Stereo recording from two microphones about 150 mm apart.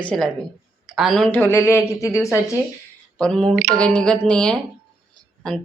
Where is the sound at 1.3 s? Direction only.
15° left (ahead or behind).